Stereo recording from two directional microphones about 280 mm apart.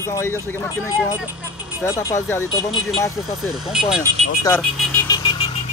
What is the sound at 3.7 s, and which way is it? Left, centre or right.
Speech, centre.